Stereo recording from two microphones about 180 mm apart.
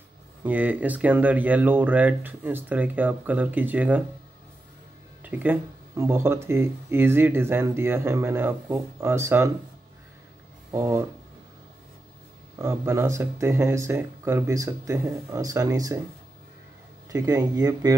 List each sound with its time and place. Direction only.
0.4 s speech: 10° right (ahead or behind)
5.2 s speech: 10° right (ahead or behind)
10.7 s speech: 15° right (ahead or behind)
12.5 s speech: 15° right (ahead or behind)
17.1 s speech: 20° right (ahead or behind)